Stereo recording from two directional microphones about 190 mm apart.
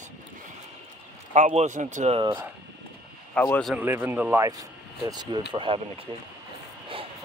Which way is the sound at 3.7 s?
10° right (ahead or behind).